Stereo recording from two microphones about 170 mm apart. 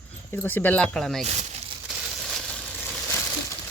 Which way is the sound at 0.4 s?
10° left (ahead or behind).